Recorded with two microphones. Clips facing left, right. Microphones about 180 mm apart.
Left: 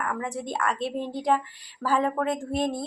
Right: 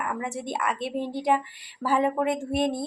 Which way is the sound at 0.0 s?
15° right (ahead or behind).